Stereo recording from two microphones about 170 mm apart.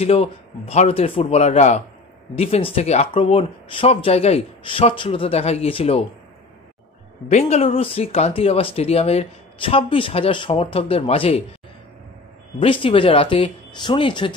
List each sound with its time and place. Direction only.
0.0 s speech: 35° left (ahead or behind)
7.2 s speech: 40° left (ahead or behind)
12.5 s speech: 30° left (ahead or behind)